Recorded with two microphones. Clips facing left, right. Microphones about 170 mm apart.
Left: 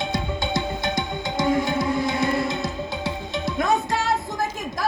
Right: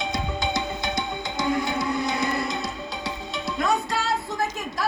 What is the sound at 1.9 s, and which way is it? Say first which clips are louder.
Music: left 3 dB; 25° left (ahead or behind).